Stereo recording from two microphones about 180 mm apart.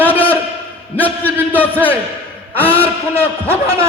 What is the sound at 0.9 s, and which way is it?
A man's voice, 10° left (ahead or behind).